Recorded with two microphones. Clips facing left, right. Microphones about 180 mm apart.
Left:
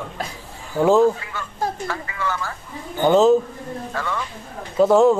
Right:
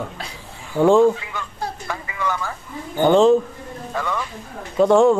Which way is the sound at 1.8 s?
15° right (ahead or behind).